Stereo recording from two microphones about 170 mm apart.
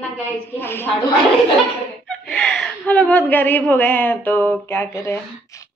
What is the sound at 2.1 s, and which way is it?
A woman's voice, 5° left (ahead or behind).